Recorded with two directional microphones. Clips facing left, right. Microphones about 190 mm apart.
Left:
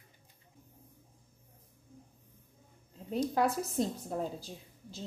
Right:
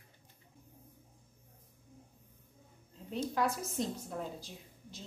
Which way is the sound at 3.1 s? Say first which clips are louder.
Left 4 dB; 35° left (ahead or behind).